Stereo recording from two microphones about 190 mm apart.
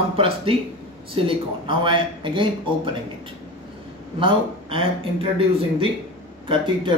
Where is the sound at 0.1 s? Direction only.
30° right (ahead or behind).